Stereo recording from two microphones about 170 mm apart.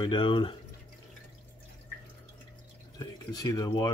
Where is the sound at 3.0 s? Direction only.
25° left (ahead or behind).